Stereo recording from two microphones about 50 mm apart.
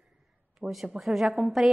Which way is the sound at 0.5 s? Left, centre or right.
Centre.